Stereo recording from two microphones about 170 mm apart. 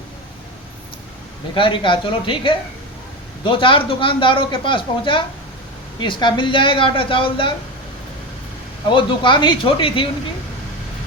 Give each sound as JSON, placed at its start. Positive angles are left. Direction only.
{"t": 1.5, "sound": "speech", "side_deg": 30}
{"t": 8.9, "sound": "speech", "side_deg": 30}